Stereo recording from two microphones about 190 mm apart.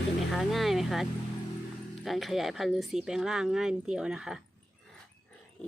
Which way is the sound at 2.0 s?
Centre (ahead or behind).